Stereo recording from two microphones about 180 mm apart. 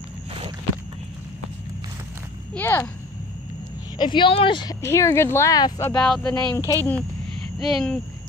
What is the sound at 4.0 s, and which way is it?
Speech, 25° left (ahead or behind).